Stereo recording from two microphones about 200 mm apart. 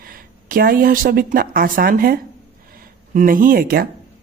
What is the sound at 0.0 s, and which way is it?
Speech, 45° right (ahead or behind).